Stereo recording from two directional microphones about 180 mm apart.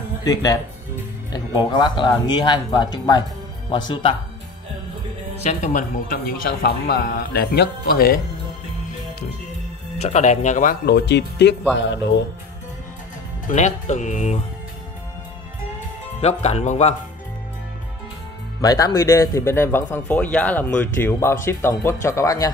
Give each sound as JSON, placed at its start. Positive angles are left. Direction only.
{"t": 0.2, "sound": "speech", "side_deg": 20}
{"t": 5.4, "sound": "a man's voice", "side_deg": 40}
{"t": 10.0, "sound": "speech", "side_deg": 40}
{"t": 10.9, "sound": "speech", "side_deg": 70}
{"t": 11.7, "sound": "speech", "side_deg": 80}
{"t": 13.5, "sound": "speech", "side_deg": 40}
{"t": 16.2, "sound": "speech", "side_deg": 35}
{"t": 18.6, "sound": "speech", "side_deg": 20}